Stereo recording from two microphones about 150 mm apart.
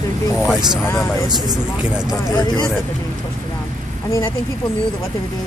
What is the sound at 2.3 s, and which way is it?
Speech, 25° left (ahead or behind).